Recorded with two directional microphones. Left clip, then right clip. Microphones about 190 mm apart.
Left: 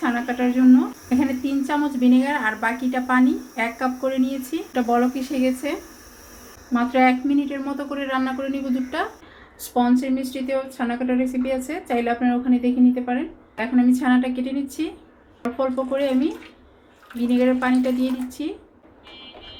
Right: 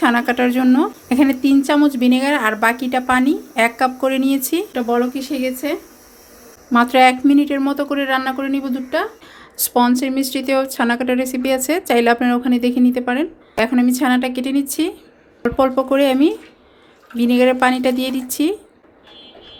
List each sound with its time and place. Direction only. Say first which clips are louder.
0.0 s a woman's voice: right 8 dB; 60° right (ahead or behind)
4.7 s speech: left 1 dB; 30° right (ahead or behind)
6.7 s a woman's voice: right 7 dB; 65° right (ahead or behind); by 8.4 s 50° right (ahead or behind)
8.9 s speech: right 7 dB; 35° right (ahead or behind)
9.7 s a woman's voice: right 5 dB; 55° right (ahead or behind)